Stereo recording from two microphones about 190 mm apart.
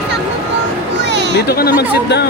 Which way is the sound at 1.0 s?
65° right (ahead or behind).